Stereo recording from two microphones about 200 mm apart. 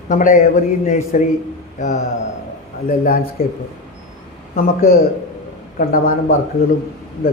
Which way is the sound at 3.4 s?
50° left (ahead or behind).